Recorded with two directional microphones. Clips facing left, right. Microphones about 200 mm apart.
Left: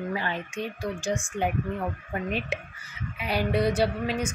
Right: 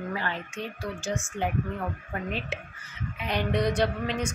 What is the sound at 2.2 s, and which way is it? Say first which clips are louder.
Speech: left 4 dB; 15° left (ahead or behind).